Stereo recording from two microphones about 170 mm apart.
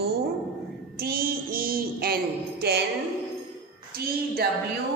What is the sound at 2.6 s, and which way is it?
Speech, 70° right (ahead or behind).